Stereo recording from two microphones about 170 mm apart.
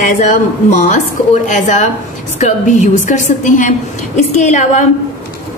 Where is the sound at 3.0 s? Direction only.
45° left (ahead or behind).